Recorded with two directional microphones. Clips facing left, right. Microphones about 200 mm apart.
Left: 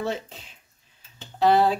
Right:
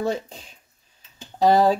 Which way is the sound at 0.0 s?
40° right (ahead or behind).